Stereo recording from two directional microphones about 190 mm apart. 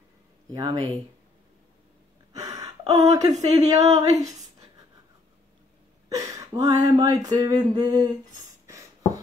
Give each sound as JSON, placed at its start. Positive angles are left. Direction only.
{"t": 0.5, "sound": "speech", "side_deg": -20}
{"t": 2.3, "sound": "gasp", "side_deg": -15}
{"t": 2.9, "sound": "speech", "side_deg": -20}
{"t": 6.0, "sound": "speech", "side_deg": -15}
{"t": 8.6, "sound": "writing", "side_deg": -15}